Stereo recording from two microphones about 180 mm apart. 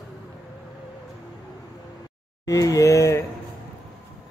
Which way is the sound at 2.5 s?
20° left (ahead or behind).